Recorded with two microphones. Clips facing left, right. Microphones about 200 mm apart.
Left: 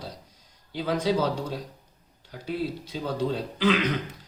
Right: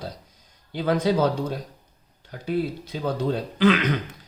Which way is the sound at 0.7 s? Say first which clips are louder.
Right 3 dB; 55° right (ahead or behind).